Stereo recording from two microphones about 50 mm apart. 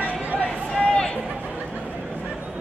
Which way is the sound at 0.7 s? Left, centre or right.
Centre.